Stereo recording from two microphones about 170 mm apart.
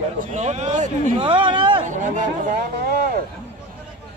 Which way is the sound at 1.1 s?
30° right (ahead or behind).